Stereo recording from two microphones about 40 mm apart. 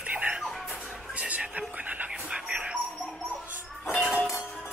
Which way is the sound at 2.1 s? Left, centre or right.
Right.